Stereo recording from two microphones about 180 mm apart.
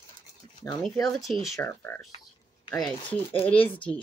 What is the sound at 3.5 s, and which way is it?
Speech, 30° left (ahead or behind).